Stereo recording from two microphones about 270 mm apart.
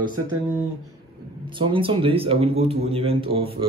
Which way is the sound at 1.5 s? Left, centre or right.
Centre.